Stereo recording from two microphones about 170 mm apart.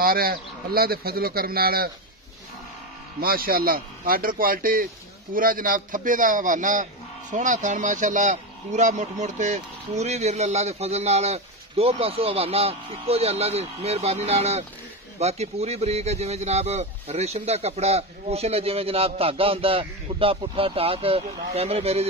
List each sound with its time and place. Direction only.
0.0 s speech: 60° right (ahead or behind)
3.2 s a man's voice: 60° right (ahead or behind); by 22.0 s 35° right (ahead or behind)